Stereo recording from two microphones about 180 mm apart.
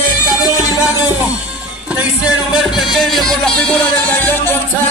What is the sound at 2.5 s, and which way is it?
Music, centre (ahead or behind).